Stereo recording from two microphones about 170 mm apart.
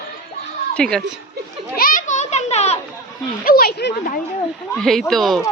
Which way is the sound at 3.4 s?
60° left (ahead or behind).